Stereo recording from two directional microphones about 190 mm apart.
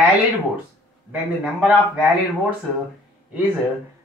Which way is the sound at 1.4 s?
5° right (ahead or behind).